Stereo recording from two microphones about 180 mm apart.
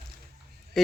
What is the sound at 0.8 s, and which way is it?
Speech, centre (ahead or behind).